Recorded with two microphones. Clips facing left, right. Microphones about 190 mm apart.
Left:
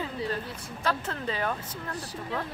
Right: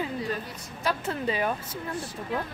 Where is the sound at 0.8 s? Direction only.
10° right (ahead or behind).